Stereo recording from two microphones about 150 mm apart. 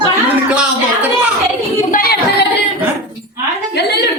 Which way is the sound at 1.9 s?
80° left.